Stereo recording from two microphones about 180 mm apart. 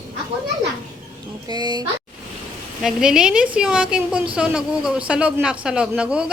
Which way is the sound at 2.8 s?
5° right (ahead or behind).